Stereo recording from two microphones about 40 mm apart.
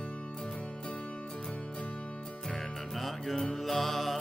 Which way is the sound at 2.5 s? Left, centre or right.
Centre.